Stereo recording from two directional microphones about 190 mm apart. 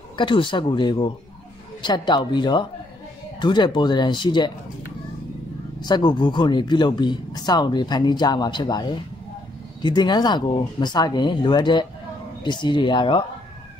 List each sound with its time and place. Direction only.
0.2 s speech: 25° left (ahead or behind)
5.8 s speech: 25° left (ahead or behind)